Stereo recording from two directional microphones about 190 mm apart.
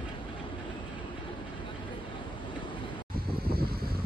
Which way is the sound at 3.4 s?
55° right (ahead or behind).